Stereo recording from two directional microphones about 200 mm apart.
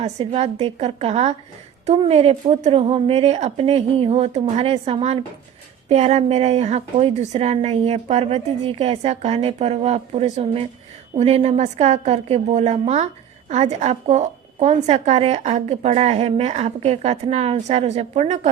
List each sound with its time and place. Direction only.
0.2 s a woman's voice: 30° right (ahead or behind)